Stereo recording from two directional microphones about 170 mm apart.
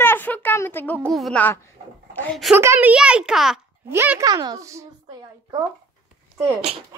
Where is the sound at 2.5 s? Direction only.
15° right (ahead or behind).